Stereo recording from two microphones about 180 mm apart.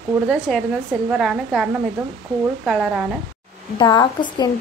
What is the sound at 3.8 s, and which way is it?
Speech, 25° left (ahead or behind).